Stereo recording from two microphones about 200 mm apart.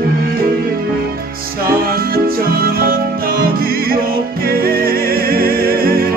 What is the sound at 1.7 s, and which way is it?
Music, 50° right (ahead or behind).